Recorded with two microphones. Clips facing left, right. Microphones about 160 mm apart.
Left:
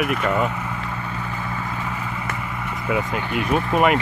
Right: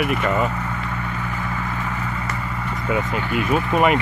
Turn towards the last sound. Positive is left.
turn(degrees=0)  # may be behind; listen again after turning